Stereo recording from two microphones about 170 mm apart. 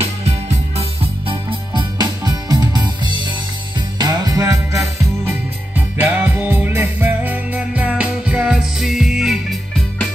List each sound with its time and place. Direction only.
0.0 s music: 35° right (ahead or behind); by 9.6 s centre (ahead or behind)